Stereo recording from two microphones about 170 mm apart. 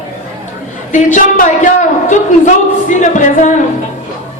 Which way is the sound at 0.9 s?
50° left (ahead or behind).